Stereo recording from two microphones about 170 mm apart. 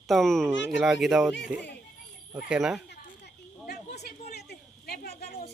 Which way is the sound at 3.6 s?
70° left (ahead or behind).